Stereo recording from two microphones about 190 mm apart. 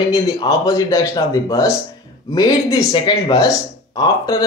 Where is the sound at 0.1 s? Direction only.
20° left (ahead or behind).